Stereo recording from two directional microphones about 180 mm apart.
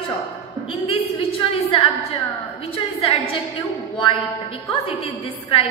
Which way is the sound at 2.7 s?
30° left (ahead or behind).